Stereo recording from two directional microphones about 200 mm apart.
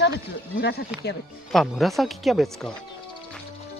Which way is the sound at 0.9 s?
5° right (ahead or behind).